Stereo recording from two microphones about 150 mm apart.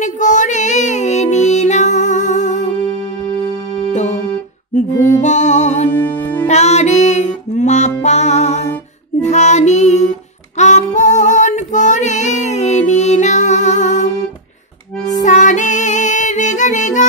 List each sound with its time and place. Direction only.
0.0 s music: 55° left (ahead or behind)
3.9 s music: 50° left (ahead or behind)
5.2 s music: 55° left (ahead or behind)
9.2 s child singing: 50° left (ahead or behind)
15.2 s music: 55° left (ahead or behind)